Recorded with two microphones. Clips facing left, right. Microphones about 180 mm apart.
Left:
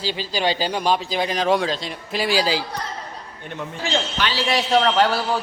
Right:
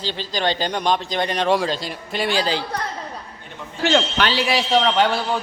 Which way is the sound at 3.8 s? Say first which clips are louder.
Right 6 dB; 80° right.